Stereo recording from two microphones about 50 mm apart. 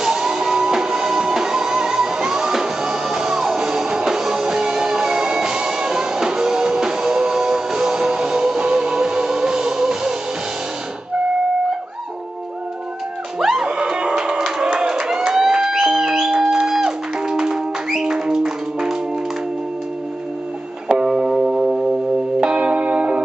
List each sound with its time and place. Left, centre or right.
0.0 s music: centre
13.4 s music: centre
13.7 s music: centre
21.1 s music: centre
22.4 s church bell: centre